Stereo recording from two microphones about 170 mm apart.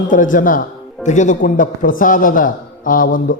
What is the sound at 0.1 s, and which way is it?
Speech, 50° left (ahead or behind).